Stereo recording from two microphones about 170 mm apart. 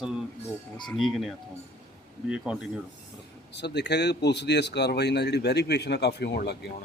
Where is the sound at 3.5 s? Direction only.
80° left.